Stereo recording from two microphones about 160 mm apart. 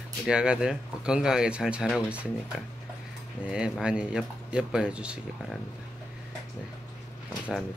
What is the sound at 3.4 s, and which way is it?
Speech, 5° right (ahead or behind).